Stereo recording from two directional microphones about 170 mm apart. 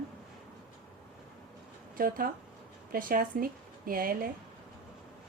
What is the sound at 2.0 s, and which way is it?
A woman's voice, 55° right (ahead or behind).